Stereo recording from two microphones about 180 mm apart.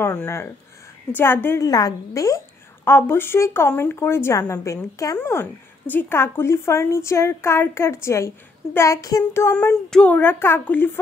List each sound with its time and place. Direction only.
0.0 s a woman's voice: 10° left (ahead or behind)